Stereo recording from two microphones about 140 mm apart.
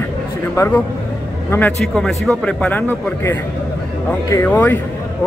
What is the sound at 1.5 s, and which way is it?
Speech, 20° left (ahead or behind).